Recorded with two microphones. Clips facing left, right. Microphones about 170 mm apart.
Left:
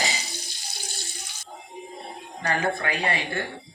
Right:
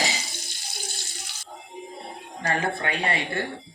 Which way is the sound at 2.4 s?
30° right (ahead or behind).